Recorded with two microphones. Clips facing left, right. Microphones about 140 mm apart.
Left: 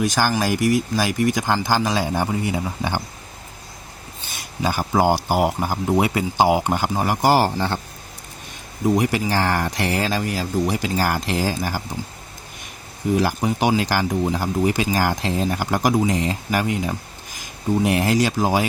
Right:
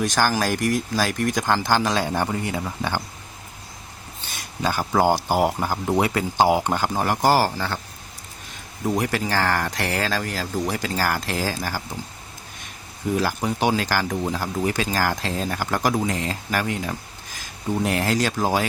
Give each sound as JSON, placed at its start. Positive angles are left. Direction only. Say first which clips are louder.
{"t": 0.0, "sound": "speech", "louder": "left 1 dB", "side_deg": 5}
{"t": 4.6, "sound": "speech", "louder": "left 1 dB", "side_deg": 10}
{"t": 8.9, "sound": "speech", "louder": "left 4 dB", "side_deg": 15}
{"t": 13.1, "sound": "speech", "louder": "left 3 dB", "side_deg": 15}